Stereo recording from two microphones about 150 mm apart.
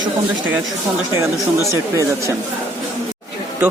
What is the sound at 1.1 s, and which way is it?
Speech, 20° right (ahead or behind).